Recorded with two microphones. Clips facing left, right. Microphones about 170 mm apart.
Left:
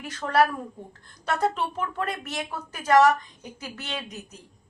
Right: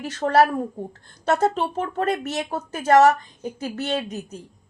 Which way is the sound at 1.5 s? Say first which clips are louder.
Right 5 dB; 30° right (ahead or behind).